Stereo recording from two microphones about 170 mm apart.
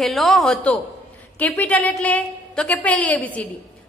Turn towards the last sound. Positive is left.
turn(degrees=10)  # may be behind; listen again after turning